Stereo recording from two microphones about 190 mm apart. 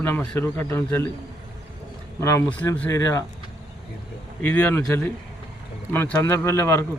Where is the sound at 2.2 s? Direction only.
15° left (ahead or behind).